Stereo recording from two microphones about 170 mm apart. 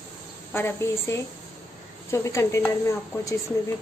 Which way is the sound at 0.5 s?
15° left (ahead or behind).